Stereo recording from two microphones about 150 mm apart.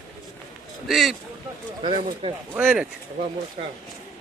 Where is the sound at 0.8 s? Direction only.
Centre (ahead or behind).